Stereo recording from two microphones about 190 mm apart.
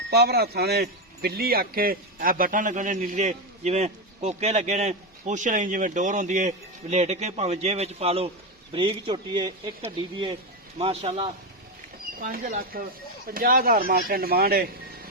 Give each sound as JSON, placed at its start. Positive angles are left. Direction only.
{"t": 0.1, "sound": "a man's voice", "side_deg": -55}
{"t": 12.2, "sound": "a man's voice", "side_deg": -50}